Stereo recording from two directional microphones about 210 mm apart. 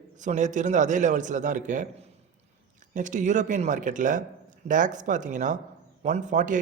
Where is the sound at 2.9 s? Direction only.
35° right (ahead or behind).